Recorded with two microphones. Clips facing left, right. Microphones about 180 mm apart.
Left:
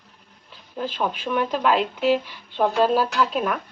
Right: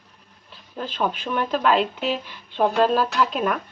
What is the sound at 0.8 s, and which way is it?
Speech, 10° left (ahead or behind).